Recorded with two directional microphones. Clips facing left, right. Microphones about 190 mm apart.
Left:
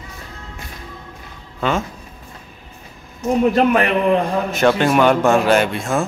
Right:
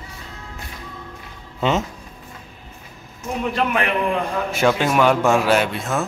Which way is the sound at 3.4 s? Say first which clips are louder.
Left 6 dB; 40° left (ahead or behind).